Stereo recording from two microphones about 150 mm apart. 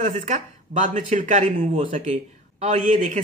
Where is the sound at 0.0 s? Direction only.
55° right (ahead or behind).